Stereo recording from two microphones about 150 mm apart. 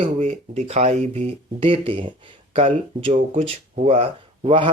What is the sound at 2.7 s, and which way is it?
Speech, 55° right (ahead or behind).